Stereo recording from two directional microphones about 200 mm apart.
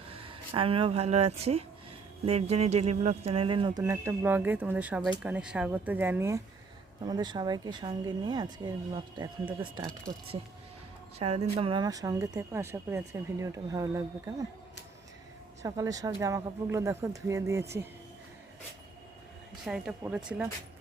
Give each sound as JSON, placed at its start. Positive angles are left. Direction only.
{"t": 0.1, "sound": "speech", "side_deg": -25}
{"t": 11.2, "sound": "speech", "side_deg": -30}
{"t": 15.6, "sound": "speech", "side_deg": -15}
{"t": 19.6, "sound": "speech", "side_deg": -5}